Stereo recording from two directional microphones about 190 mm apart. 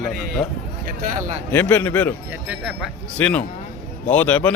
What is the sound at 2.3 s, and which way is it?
Speech, 5° right (ahead or behind).